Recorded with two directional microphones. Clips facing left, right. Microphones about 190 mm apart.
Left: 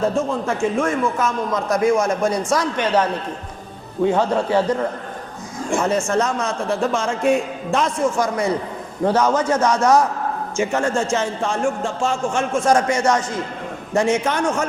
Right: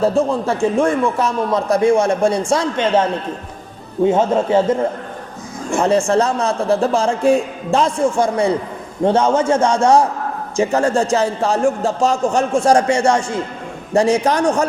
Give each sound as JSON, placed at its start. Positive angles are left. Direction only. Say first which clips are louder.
{"t": 0.0, "sound": "a man's voice", "louder": "right 4 dB", "side_deg": -35}